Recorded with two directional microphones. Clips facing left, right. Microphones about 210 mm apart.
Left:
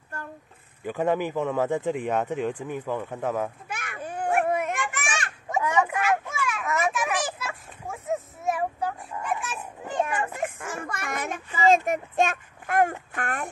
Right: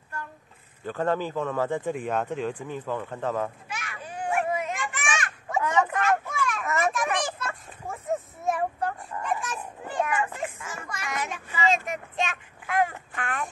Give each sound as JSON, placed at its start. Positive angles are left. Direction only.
{"t": 0.8, "sound": "speech", "side_deg": 15}
{"t": 3.6, "sound": "children playing", "side_deg": 55}
{"t": 5.0, "sound": "children playing", "side_deg": 35}
{"t": 5.5, "sound": "children playing", "side_deg": 10}
{"t": 9.8, "sound": "children playing", "side_deg": 20}
{"t": 10.4, "sound": "a child's voice", "side_deg": 55}